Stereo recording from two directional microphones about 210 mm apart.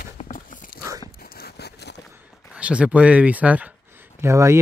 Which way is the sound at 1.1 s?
45° left (ahead or behind).